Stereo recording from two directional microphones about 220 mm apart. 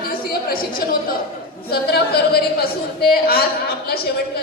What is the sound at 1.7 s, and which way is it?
A man's voice, 45° left (ahead or behind).